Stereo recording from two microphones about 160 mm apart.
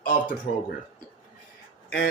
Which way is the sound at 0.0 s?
60° left (ahead or behind).